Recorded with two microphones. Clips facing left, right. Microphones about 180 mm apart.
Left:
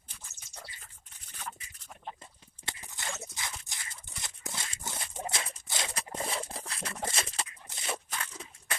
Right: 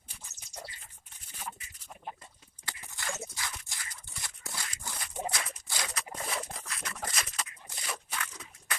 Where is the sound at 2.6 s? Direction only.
20° left (ahead or behind).